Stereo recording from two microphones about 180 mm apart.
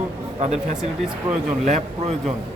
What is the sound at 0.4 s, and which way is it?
A man's voice, 40° right (ahead or behind).